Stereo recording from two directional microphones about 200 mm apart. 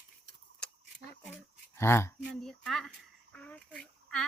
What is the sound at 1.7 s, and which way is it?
Speech, 15° left (ahead or behind).